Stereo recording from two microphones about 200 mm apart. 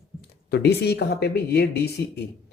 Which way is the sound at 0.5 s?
55° left (ahead or behind).